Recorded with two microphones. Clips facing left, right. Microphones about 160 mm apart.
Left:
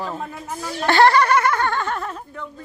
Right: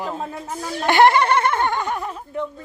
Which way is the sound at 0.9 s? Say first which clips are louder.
Even; 20° right (ahead or behind).